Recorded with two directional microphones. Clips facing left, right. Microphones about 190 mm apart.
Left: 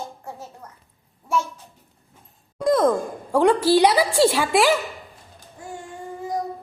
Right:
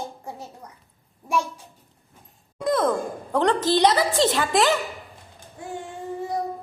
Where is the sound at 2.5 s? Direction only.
5° right (ahead or behind).